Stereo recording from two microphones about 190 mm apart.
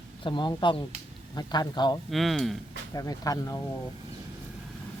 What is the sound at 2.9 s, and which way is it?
Speech, 20° left (ahead or behind).